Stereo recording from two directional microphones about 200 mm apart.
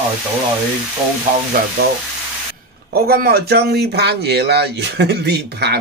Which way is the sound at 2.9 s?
50° right (ahead or behind).